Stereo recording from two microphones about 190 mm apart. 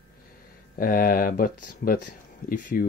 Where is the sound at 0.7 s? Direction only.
50° left (ahead or behind).